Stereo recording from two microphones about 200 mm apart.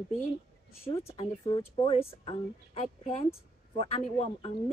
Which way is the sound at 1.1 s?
25° left (ahead or behind).